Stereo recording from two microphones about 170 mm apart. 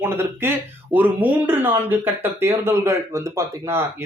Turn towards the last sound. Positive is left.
turn(degrees=-15)  # may be behind; listen again after turning